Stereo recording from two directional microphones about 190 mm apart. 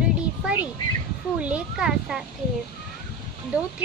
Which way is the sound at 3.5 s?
5° right (ahead or behind).